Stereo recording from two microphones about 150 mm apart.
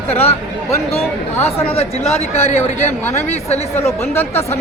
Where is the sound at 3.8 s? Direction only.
15° left (ahead or behind).